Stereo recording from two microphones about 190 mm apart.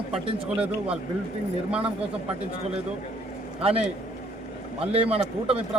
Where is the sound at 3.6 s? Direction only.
30° right (ahead or behind).